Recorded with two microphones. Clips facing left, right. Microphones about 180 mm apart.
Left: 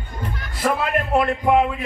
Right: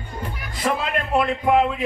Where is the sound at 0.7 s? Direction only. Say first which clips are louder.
Left 2 dB; centre (ahead or behind).